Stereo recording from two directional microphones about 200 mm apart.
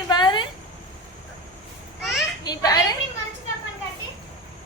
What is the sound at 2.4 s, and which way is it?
Speech, 20° left (ahead or behind).